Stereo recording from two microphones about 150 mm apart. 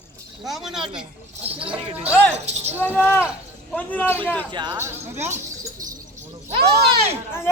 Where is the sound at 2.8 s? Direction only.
10° left (ahead or behind).